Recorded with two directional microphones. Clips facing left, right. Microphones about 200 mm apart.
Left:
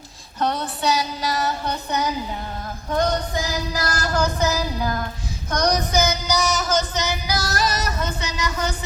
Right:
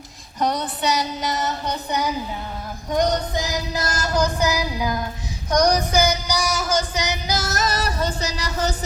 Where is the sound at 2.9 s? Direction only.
20° right (ahead or behind).